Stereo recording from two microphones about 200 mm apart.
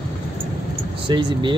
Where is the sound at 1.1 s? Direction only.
25° right (ahead or behind).